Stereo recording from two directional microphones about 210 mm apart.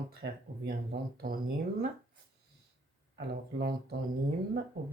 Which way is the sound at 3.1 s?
50° right (ahead or behind).